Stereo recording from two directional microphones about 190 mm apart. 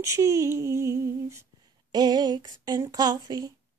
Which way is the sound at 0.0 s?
15° right (ahead or behind).